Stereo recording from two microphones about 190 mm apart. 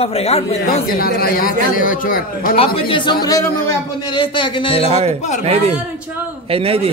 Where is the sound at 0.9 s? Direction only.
50° left (ahead or behind).